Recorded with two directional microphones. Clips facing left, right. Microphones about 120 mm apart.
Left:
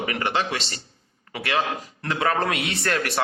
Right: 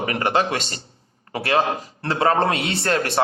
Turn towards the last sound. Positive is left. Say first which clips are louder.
# right 4 dB
turn(degrees=-25)  # may be behind; listen again after turning